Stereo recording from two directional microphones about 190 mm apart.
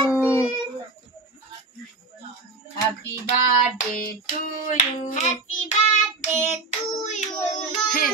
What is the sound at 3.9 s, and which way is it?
Child singing, 45° left (ahead or behind).